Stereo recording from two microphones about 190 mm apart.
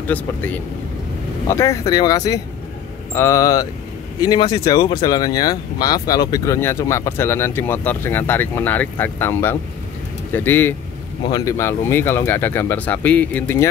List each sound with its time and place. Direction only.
0.0 s speech: 10° left (ahead or behind)